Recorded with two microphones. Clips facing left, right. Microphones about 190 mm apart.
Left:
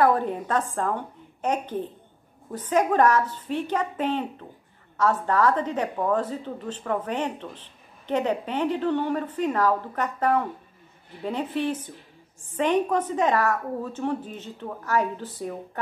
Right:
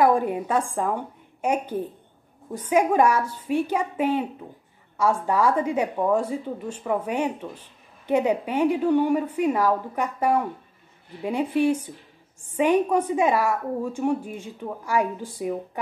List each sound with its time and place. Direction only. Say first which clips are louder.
0.0 s a woman's voice: right 2 dB; 10° right (ahead or behind)